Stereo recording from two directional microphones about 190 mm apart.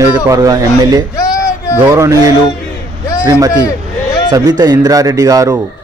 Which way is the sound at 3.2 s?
15° right (ahead or behind).